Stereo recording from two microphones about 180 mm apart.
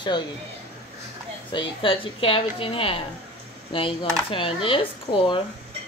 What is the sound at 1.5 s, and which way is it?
A woman's voice, 30° left (ahead or behind).